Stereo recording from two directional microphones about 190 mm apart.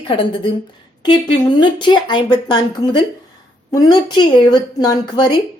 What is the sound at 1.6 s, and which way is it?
A woman's voice, 25° left (ahead or behind).